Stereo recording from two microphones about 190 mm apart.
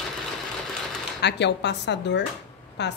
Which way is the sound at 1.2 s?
65° left (ahead or behind).